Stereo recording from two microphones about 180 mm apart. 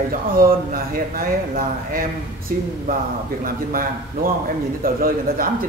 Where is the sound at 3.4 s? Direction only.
50° right (ahead or behind).